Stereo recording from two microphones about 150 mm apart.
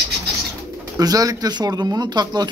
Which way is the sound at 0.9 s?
25° right (ahead or behind).